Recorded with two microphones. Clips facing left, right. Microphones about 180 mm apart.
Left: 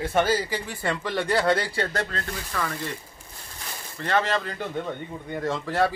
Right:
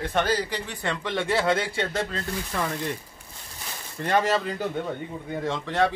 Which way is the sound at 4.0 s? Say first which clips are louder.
Right 2 dB; 15° right (ahead or behind).